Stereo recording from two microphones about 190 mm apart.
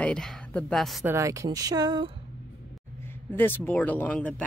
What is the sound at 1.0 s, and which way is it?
Speech, 15° right (ahead or behind).